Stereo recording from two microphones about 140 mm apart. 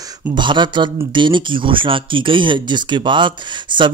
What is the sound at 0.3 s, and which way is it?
Speech, 35° right (ahead or behind).